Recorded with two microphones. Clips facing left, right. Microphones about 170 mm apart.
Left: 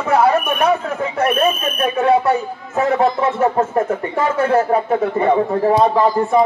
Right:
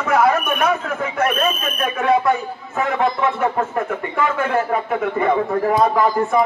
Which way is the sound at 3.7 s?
40° left (ahead or behind).